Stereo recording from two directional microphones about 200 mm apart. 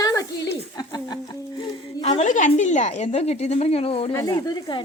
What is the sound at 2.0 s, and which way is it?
Speech, 35° left (ahead or behind).